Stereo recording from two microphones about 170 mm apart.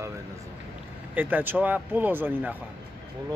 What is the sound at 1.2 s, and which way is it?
Speech, 10° right (ahead or behind).